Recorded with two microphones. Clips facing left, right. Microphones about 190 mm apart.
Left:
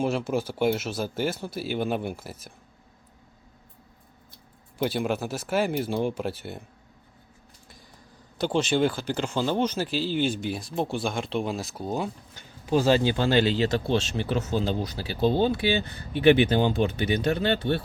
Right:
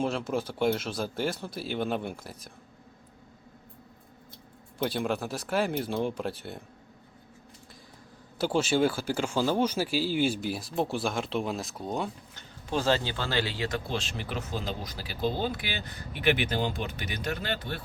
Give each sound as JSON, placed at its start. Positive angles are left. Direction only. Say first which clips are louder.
{"t": 0.0, "sound": "speech", "louder": "left 3 dB", "side_deg": 5}
{"t": 4.8, "sound": "speech", "louder": "left 3 dB", "side_deg": 0}
{"t": 8.4, "sound": "speech", "louder": "left 2 dB", "side_deg": -5}